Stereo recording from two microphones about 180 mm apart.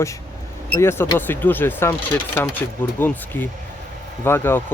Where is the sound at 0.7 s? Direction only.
15° left (ahead or behind).